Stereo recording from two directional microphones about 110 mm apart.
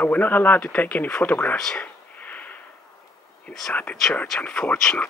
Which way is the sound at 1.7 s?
15° left (ahead or behind).